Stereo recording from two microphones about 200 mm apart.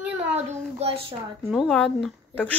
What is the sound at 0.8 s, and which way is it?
Speech, 30° right (ahead or behind).